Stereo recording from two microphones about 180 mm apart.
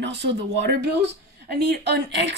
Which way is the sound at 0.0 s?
75° right (ahead or behind).